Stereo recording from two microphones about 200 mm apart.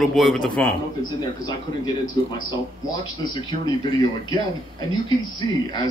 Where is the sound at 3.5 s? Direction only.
20° left (ahead or behind).